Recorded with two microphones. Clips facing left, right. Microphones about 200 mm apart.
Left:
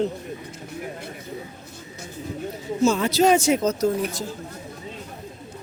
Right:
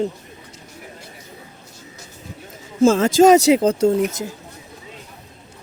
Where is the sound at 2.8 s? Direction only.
90° right.